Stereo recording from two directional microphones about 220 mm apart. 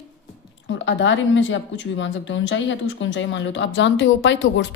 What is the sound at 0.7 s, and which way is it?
Speech, 55° left (ahead or behind).